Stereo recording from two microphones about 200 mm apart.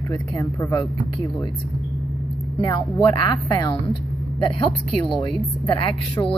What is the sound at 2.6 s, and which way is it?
Speech, 20° left (ahead or behind).